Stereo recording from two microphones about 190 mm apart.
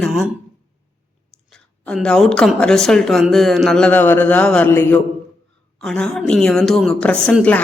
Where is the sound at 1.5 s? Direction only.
5° left (ahead or behind).